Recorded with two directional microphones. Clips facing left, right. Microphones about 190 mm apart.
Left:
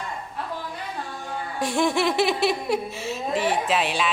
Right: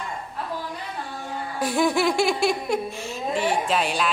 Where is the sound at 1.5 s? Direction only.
Centre (ahead or behind).